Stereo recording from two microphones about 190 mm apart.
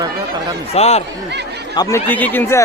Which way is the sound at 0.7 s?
35° left (ahead or behind).